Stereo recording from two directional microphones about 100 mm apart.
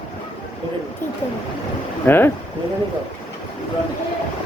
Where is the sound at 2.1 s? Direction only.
20° left (ahead or behind).